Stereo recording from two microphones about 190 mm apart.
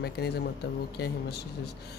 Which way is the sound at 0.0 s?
60° left (ahead or behind).